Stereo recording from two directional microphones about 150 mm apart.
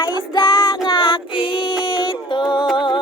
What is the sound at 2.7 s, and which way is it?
Humming, 35° left (ahead or behind).